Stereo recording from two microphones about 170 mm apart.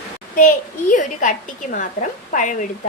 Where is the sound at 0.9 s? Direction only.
50° left (ahead or behind).